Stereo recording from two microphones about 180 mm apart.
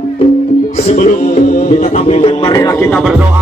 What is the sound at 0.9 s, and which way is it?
Music, 40° left (ahead or behind).